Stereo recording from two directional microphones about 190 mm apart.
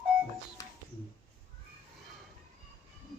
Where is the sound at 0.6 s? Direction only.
20° left (ahead or behind).